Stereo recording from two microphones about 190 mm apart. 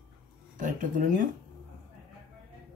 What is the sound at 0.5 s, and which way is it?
Speech, 45° right (ahead or behind).